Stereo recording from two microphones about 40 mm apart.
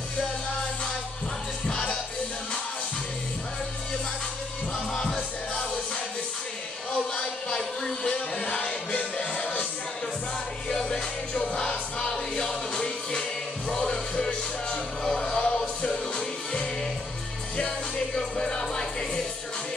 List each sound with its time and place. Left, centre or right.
7.4 s a sound: centre
8.1 s music: left
10.7 s music: centre
15.3 s music: left
17.6 s music: left